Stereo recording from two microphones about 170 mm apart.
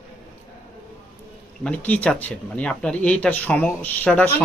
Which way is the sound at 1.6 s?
5° left (ahead or behind).